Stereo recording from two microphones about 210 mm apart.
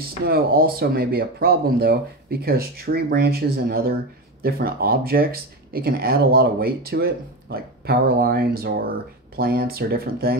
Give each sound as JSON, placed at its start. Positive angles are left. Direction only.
{"t": 0.0, "sound": "speech", "side_deg": -45}